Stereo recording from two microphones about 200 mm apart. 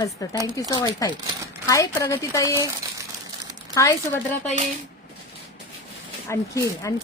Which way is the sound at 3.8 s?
15° left (ahead or behind).